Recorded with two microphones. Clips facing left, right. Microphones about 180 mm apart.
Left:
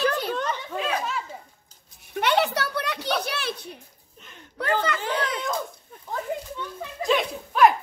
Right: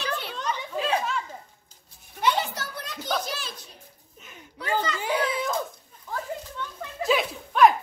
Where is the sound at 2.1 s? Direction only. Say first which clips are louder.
Left 4 dB; 70° left (ahead or behind).